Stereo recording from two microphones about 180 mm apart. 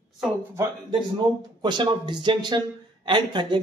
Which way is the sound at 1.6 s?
25° right (ahead or behind).